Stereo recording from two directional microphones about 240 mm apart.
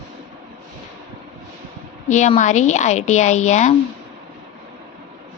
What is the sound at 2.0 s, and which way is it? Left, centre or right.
A woman's voice, left.